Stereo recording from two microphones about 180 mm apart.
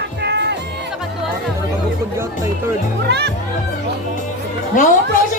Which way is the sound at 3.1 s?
70° right (ahead or behind).